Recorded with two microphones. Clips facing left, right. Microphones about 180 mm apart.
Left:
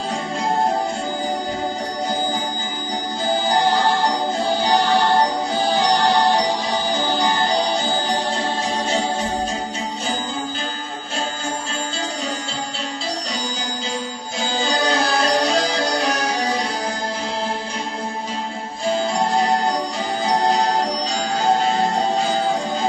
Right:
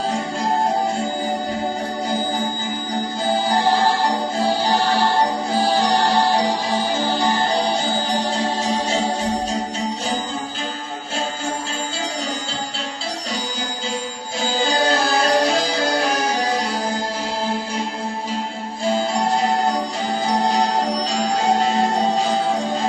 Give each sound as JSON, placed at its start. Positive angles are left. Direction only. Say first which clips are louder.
{"t": 14.8, "sound": "music", "louder": "right 1 dB", "side_deg": -5}